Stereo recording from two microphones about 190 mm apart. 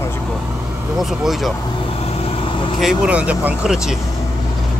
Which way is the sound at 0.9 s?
Centre (ahead or behind).